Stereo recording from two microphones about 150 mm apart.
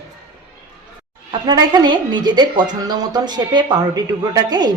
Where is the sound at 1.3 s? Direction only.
30° right (ahead or behind).